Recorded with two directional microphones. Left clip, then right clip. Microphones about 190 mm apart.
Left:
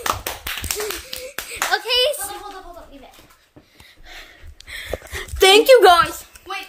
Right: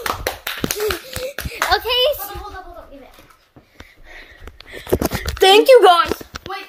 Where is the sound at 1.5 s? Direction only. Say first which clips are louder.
Right 3 dB; 15° right (ahead or behind).